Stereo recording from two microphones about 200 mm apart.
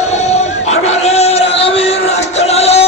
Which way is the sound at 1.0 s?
30° left (ahead or behind).